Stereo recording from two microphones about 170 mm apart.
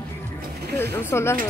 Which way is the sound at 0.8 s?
15° left (ahead or behind).